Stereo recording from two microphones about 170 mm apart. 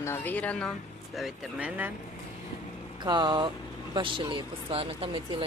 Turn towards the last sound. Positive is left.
turn(degrees=-35)  # may be behind; listen again after turning